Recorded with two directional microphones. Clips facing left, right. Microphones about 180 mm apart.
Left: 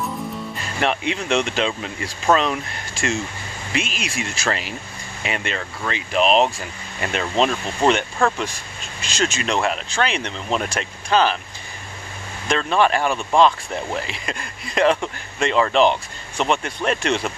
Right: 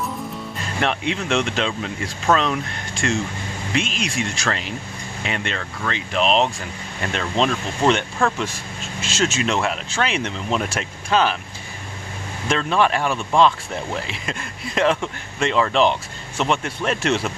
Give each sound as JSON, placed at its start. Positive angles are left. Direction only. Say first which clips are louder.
{"t": 0.7, "sound": "speech", "louder": "left 1 dB", "side_deg": 0}
{"t": 12.4, "sound": "speech", "louder": "left 1 dB", "side_deg": 0}